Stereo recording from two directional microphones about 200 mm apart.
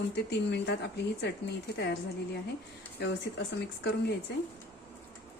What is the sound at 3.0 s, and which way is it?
Speech, 55° left (ahead or behind).